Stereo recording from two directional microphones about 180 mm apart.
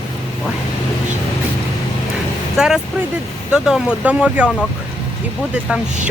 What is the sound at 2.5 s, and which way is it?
Speech, 5° right (ahead or behind).